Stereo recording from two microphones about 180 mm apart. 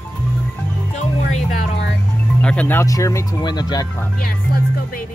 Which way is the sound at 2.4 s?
5° left (ahead or behind).